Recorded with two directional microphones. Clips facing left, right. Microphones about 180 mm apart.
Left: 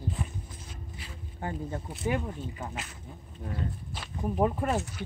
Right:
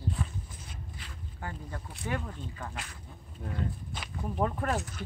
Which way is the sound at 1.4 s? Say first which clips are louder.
Left 6 dB; 20° left (ahead or behind).